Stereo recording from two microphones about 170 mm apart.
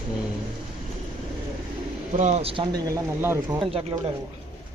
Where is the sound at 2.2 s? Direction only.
40° right (ahead or behind); by 4.1 s 15° right (ahead or behind).